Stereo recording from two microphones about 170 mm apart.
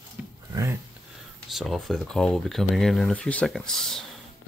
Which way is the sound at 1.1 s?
Centre (ahead or behind).